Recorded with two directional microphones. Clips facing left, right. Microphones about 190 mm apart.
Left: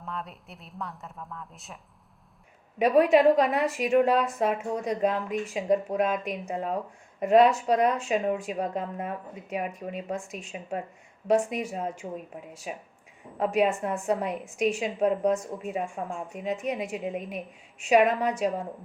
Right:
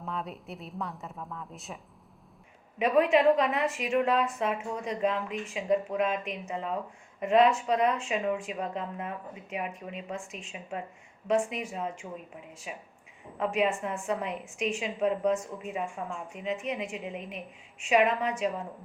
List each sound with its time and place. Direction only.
0.0 s a woman's voice: centre (ahead or behind)
2.7 s a woman's voice: 40° left (ahead or behind)